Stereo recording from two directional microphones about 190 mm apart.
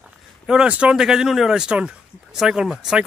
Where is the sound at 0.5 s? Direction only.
5° right (ahead or behind).